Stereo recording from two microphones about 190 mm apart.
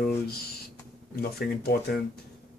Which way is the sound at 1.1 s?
55° left (ahead or behind).